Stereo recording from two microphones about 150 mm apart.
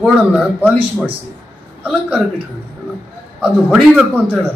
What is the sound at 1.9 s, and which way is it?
Speech, 5° right (ahead or behind).